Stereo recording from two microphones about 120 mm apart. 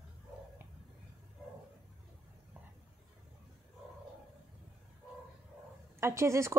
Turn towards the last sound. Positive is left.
turn(degrees=-25)  # may be behind; listen again after turning